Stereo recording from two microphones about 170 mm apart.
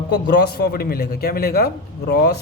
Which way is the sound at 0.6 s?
65° left (ahead or behind).